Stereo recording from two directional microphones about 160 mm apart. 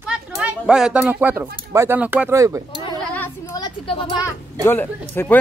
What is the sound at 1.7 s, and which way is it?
Speech, 15° right (ahead or behind).